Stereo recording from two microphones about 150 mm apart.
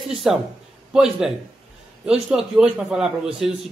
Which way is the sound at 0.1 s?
5° right (ahead or behind).